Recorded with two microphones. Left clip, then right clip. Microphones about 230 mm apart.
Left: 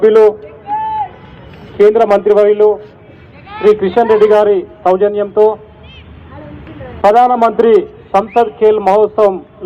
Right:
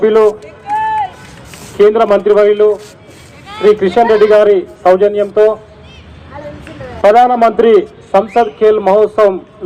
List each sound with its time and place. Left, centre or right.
0.0 s a man's voice: right
1.8 s a man's voice: right
7.0 s a man's voice: right